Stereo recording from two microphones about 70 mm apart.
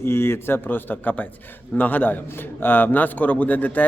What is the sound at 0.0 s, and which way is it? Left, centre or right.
A man's voice, left.